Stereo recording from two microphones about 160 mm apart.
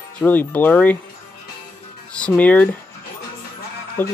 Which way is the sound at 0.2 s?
10° left (ahead or behind).